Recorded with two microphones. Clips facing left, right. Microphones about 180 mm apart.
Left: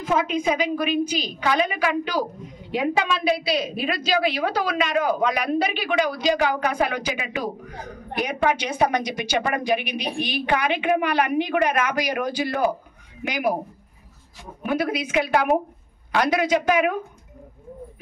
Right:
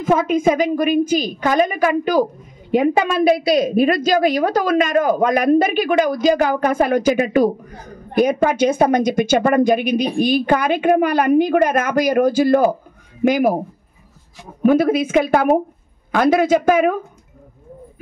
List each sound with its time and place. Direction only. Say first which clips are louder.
0.0 s a woman's voice: right 7 dB; 50° right (ahead or behind)
14.6 s a woman's voice: right 10 dB; 45° right (ahead or behind)